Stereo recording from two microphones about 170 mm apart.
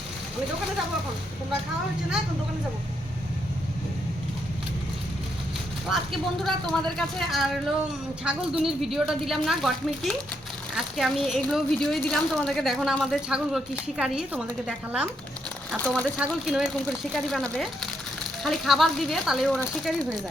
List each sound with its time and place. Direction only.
5.9 s a woman's voice: centre (ahead or behind)
15.8 s speech: 10° left (ahead or behind)
16.1 s a woman's voice: 5° right (ahead or behind)